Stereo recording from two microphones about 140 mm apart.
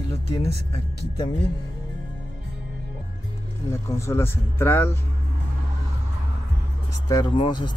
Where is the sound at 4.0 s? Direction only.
20° left (ahead or behind).